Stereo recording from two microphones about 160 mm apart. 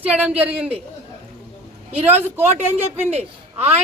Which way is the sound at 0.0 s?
10° right (ahead or behind).